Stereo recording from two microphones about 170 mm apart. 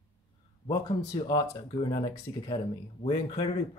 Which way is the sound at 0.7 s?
25° left (ahead or behind).